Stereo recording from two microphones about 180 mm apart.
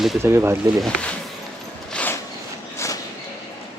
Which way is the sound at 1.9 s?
5° left (ahead or behind).